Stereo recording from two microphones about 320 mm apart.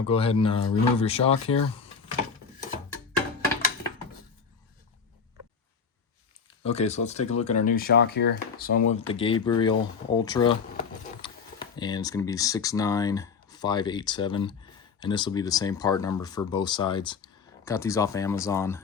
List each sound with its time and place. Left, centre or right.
0.1 s speech: centre
6.7 s speech: centre